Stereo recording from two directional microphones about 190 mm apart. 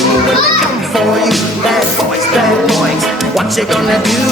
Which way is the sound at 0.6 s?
Centre (ahead or behind).